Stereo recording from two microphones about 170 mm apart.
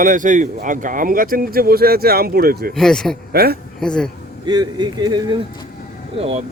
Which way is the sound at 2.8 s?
5° left (ahead or behind).